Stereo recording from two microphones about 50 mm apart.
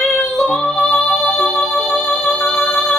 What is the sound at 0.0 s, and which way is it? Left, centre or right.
Music, centre.